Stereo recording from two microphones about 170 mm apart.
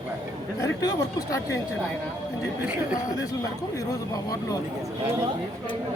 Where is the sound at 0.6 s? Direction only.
20° left (ahead or behind).